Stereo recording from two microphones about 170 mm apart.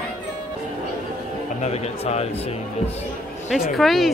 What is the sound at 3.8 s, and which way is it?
Speech, centre (ahead or behind).